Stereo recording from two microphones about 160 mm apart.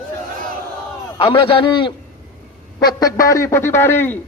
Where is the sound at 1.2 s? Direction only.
30° left (ahead or behind).